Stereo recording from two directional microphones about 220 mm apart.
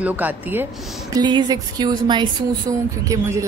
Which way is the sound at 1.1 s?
20° right (ahead or behind).